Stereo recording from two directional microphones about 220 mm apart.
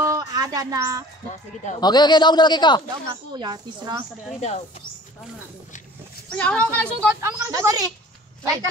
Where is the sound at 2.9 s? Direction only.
20° right (ahead or behind).